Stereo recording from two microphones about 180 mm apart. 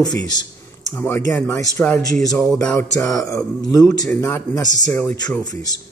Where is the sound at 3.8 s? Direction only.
15° left (ahead or behind).